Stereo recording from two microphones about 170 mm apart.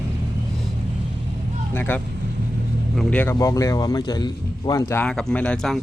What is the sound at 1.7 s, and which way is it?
Speech, 10° left (ahead or behind).